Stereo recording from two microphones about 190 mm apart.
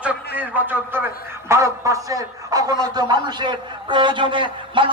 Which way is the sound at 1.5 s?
15° right (ahead or behind).